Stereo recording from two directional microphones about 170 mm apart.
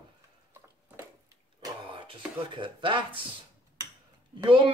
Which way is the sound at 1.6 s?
30° right (ahead or behind).